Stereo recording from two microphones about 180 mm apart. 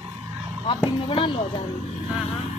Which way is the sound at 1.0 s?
30° left (ahead or behind).